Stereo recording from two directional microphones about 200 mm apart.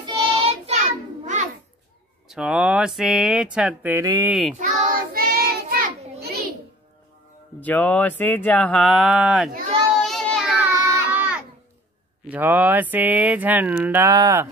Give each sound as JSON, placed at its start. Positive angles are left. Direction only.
{"t": 0.0, "sound": "child singing", "side_deg": -30}
{"t": 1.2, "sound": "a sound", "side_deg": -40}
{"t": 2.2, "sound": "speech", "side_deg": 0}
{"t": 4.3, "sound": "speech", "side_deg": 0}
{"t": 4.6, "sound": "child singing", "side_deg": -40}
{"t": 7.6, "sound": "speech", "side_deg": 10}
{"t": 9.9, "sound": "child singing", "side_deg": 0}
{"t": 10.7, "sound": "a sound", "side_deg": -10}
{"t": 12.3, "sound": "speech", "side_deg": -10}